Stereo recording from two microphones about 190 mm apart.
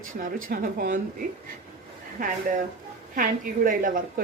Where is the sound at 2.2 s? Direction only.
45° right (ahead or behind).